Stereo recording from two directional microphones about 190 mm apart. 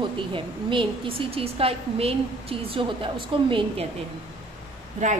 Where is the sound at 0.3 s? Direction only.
25° right (ahead or behind).